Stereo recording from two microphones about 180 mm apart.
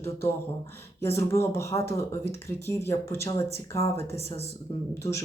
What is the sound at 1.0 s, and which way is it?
Speech, 15° left (ahead or behind).